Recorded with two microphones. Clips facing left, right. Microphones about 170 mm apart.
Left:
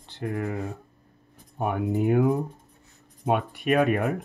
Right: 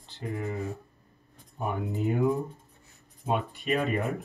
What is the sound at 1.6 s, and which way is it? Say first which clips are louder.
Speech: left 5 dB; 65° left (ahead or behind).